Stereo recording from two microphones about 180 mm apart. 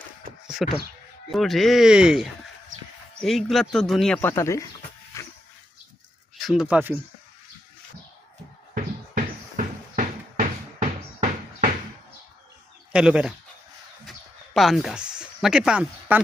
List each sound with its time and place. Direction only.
0.4 s a sound: centre (ahead or behind)
1.3 s speech: centre (ahead or behind)
5.1 s dog: 15° left (ahead or behind)
6.4 s speech: 5° right (ahead or behind)
8.7 s a sound: 50° right (ahead or behind)
12.9 s speech: 5° right (ahead or behind)
14.5 s speech: centre (ahead or behind)